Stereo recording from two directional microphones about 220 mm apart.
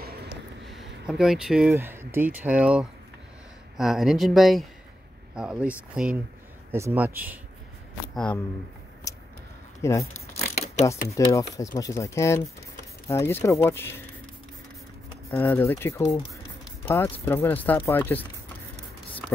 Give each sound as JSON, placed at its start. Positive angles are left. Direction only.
{"t": 1.0, "sound": "speech", "side_deg": 0}
{"t": 6.7, "sound": "speech", "side_deg": -10}
{"t": 8.1, "sound": "speech", "side_deg": 5}
{"t": 9.1, "sound": "a sound", "side_deg": 15}
{"t": 9.8, "sound": "speech", "side_deg": 15}
{"t": 10.4, "sound": "shuffling cards", "side_deg": 30}
{"t": 10.9, "sound": "speech", "side_deg": 15}
{"t": 15.2, "sound": "speech", "side_deg": 10}